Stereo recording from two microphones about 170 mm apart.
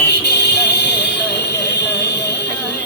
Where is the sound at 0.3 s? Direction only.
90° left.